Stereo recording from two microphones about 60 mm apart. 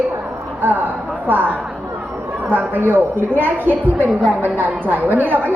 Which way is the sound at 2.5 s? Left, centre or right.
Right.